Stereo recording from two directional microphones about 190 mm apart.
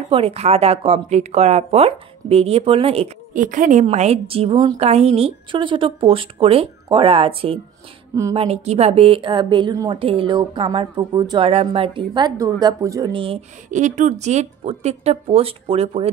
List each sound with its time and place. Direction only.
0.1 s speech: 30° right (ahead or behind)
3.3 s a woman's voice: 45° right (ahead or behind); by 13.4 s 25° right (ahead or behind)
13.7 s speech: 40° right (ahead or behind)